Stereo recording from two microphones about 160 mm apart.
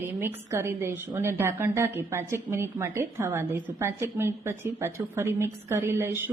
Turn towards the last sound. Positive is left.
turn(degrees=-15)  # may be behind; listen again after turning